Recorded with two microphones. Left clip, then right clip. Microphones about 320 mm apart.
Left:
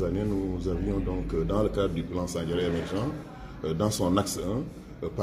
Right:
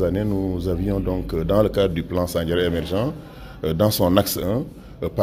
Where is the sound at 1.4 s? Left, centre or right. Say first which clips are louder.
Right 9 dB; right.